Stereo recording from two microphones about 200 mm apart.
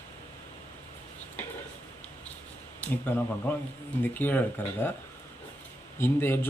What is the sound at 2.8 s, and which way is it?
Speech, 10° left (ahead or behind).